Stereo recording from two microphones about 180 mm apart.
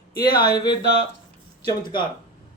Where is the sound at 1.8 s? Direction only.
25° left (ahead or behind).